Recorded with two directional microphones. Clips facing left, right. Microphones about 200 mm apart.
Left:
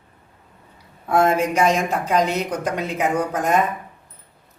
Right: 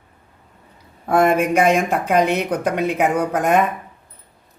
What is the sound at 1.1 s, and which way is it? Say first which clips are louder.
Speech: right 2 dB; 55° right (ahead or behind).